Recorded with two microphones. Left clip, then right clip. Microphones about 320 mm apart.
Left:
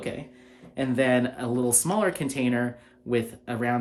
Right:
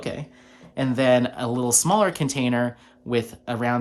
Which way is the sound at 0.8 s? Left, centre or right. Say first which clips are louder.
Right 4 dB; centre.